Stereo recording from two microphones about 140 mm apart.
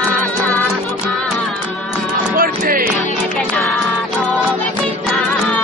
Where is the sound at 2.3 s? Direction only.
85° right.